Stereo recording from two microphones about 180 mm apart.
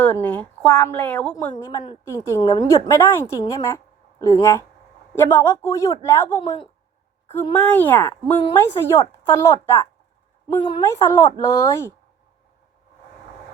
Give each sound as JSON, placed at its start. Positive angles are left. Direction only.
{"t": 0.0, "sound": "speech", "side_deg": 10}
{"t": 1.5, "sound": "speech", "side_deg": 20}
{"t": 10.8, "sound": "speech", "side_deg": 15}